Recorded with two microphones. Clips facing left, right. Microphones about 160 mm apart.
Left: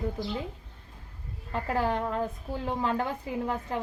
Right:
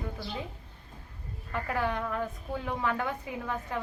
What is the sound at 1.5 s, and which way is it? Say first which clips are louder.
A woman's voice: left 3 dB; 30° left (ahead or behind).